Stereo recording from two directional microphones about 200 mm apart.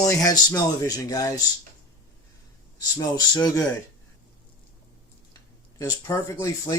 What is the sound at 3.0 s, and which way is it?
Speech, 20° left (ahead or behind).